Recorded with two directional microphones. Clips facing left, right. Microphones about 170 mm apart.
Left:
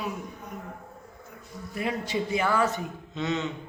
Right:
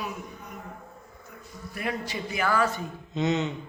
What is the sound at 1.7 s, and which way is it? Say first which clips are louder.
A man's voice: left 3 dB; 20° left (ahead or behind).